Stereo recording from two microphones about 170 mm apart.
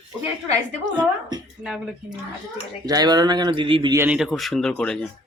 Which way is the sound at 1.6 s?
Centre (ahead or behind).